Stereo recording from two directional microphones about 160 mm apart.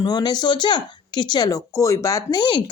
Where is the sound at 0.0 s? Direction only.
25° left (ahead or behind).